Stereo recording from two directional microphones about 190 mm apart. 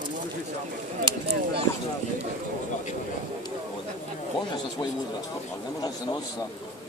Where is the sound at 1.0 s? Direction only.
25° right (ahead or behind).